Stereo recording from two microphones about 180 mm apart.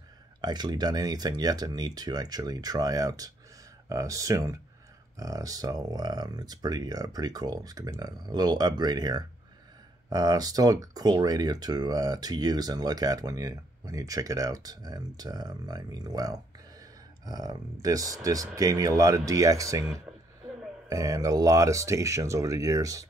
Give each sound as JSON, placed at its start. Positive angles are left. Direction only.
{"t": 0.4, "sound": "speech", "side_deg": -20}
{"t": 20.9, "sound": "speech", "side_deg": -20}